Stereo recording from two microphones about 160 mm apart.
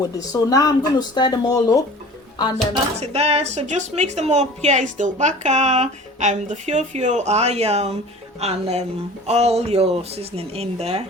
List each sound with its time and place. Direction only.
0.2 s speech: 25° left (ahead or behind)
3.0 s a woman's voice: 40° right (ahead or behind)